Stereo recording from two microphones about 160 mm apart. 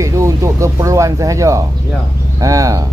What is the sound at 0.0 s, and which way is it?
Speech, 20° right (ahead or behind).